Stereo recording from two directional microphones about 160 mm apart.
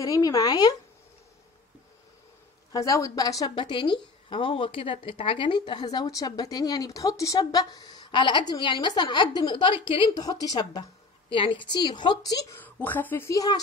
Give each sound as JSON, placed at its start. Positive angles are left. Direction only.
{"t": 0.0, "sound": "a woman's voice", "side_deg": 20}
{"t": 2.7, "sound": "a woman's voice", "side_deg": 20}